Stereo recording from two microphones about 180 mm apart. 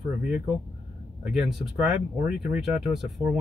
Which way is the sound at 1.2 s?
5° right (ahead or behind).